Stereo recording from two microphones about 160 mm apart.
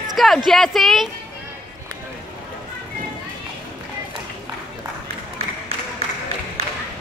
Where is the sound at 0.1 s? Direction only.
Centre (ahead or behind).